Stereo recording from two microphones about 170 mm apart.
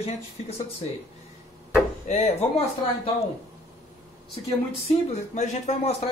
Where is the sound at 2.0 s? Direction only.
45° left (ahead or behind).